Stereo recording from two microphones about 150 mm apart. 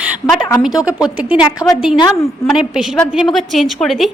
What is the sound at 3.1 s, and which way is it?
Speech, centre (ahead or behind).